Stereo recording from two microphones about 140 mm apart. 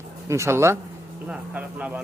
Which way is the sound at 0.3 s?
20° right (ahead or behind).